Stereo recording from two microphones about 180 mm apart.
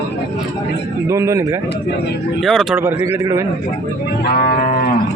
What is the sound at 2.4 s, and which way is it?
Speech, centre (ahead or behind).